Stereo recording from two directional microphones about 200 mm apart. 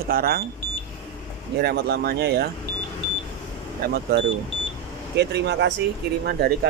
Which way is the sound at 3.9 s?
55° right (ahead or behind).